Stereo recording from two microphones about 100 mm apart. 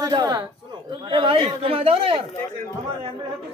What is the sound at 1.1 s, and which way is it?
Speech, 65° right (ahead or behind).